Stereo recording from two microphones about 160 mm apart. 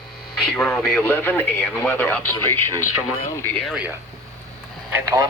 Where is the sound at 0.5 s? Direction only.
10° left (ahead or behind).